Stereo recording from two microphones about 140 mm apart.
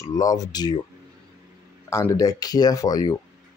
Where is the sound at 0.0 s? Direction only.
25° left (ahead or behind).